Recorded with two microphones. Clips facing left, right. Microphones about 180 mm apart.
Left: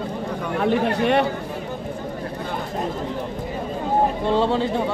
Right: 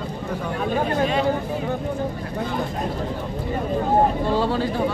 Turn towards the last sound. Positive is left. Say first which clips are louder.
# left 2 dB
turn(degrees=25)  # may be behind; listen again after turning